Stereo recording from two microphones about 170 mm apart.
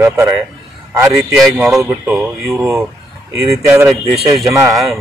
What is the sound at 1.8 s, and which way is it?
Speech, 15° right (ahead or behind).